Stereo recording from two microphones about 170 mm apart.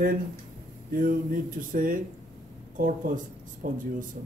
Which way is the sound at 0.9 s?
55° right (ahead or behind).